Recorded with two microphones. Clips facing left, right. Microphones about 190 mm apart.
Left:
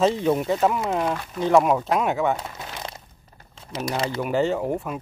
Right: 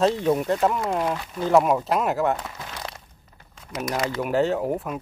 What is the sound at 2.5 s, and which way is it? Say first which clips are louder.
Crumpling: left 1 dB; 25° left (ahead or behind).